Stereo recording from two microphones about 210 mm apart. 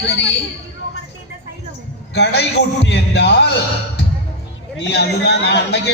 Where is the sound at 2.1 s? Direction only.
55° left (ahead or behind).